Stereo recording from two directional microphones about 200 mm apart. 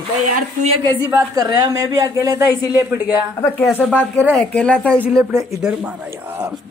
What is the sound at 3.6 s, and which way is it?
Speech, 5° left (ahead or behind).